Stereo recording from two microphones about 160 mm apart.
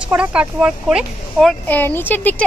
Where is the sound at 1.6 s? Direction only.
10° left (ahead or behind).